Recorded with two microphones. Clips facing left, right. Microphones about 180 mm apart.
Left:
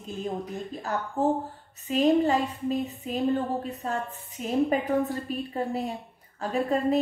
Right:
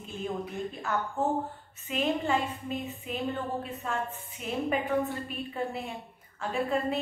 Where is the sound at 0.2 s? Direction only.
35° left (ahead or behind).